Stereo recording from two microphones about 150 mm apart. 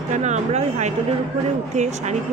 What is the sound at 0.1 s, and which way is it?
Speech, 50° right (ahead or behind).